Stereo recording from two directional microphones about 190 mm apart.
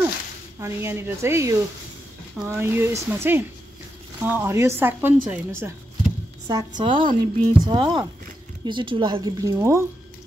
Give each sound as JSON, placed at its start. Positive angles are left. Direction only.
{"t": 0.6, "sound": "speech", "side_deg": -15}